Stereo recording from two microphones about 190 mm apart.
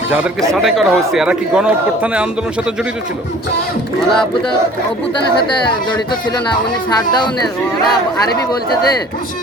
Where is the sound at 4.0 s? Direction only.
5° left (ahead or behind).